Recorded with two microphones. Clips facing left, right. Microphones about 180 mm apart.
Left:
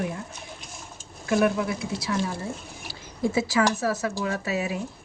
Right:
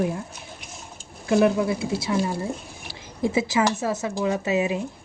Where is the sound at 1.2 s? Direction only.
25° right (ahead or behind).